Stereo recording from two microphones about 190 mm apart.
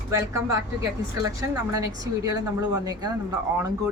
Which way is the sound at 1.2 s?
15° right (ahead or behind).